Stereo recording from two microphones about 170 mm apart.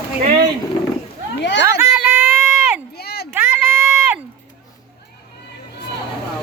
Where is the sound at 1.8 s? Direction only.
10° right (ahead or behind).